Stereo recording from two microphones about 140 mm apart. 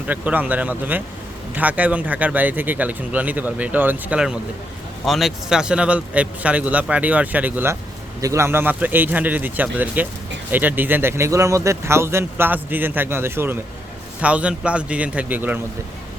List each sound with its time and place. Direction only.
0.1 s speech: 10° right (ahead or behind)